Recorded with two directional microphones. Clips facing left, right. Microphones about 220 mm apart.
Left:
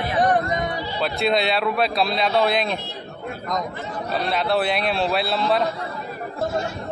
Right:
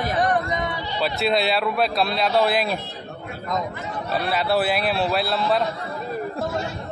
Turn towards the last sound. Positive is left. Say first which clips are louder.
# even
turn(degrees=0)  # may be behind; listen again after turning